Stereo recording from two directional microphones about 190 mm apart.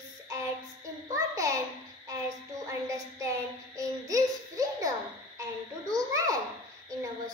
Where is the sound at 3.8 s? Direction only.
20° right (ahead or behind).